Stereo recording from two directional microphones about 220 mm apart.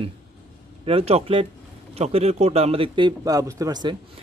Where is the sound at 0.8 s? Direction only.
25° right (ahead or behind).